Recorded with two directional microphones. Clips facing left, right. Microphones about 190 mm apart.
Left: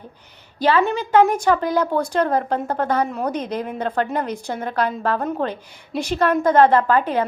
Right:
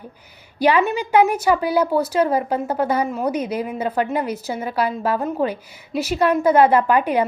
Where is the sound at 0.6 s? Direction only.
15° right (ahead or behind).